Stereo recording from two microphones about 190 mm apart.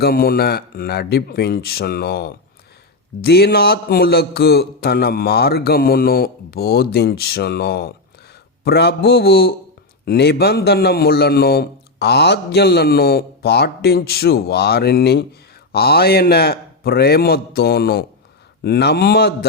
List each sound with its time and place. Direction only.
0.0 s a man's voice: 55° left (ahead or behind)